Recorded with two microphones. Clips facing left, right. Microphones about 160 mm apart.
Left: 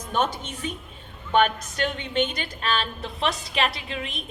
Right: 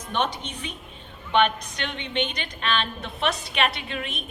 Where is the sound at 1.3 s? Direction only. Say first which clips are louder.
Left 1 dB; 45° left (ahead or behind).